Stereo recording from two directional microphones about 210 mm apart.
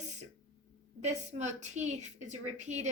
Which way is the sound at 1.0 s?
35° right (ahead or behind).